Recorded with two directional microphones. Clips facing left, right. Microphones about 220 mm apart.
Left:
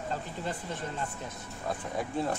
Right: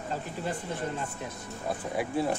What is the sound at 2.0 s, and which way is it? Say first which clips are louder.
Speech: right 3 dB; 5° right (ahead or behind).